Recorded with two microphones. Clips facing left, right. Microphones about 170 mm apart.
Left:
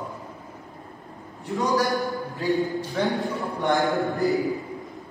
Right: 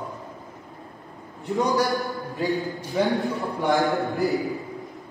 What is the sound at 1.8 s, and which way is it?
A man's voice, centre (ahead or behind).